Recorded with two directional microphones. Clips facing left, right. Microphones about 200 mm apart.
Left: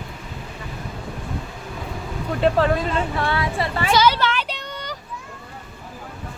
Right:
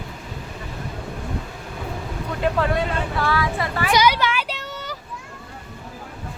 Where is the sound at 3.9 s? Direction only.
15° right (ahead or behind).